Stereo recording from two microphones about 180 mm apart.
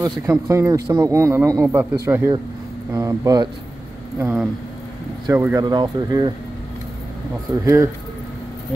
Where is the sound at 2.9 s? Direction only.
20° right (ahead or behind).